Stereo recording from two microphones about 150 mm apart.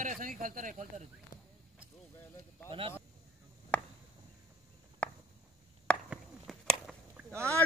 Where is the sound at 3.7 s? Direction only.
10° left (ahead or behind).